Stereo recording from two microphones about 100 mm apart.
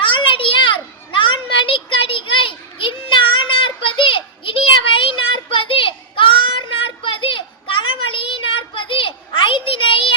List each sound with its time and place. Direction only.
0.0 s children playing: 60° left (ahead or behind)